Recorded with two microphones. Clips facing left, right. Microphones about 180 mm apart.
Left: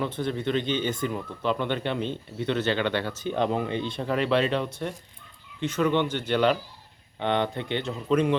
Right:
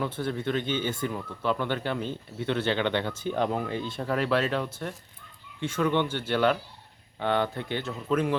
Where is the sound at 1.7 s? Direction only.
5° right (ahead or behind).